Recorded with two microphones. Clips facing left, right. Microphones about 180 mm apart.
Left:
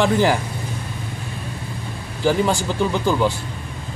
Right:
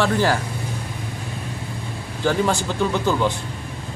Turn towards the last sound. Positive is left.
turn(degrees=15)  # may be behind; listen again after turning